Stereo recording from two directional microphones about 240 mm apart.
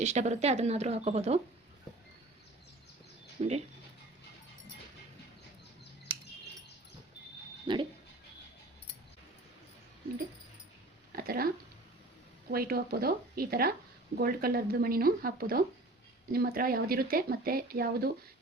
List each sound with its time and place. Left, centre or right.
0.0 s speech: right
3.4 s speech: right
7.7 s speech: centre
11.1 s a sound: right
12.5 s speech: right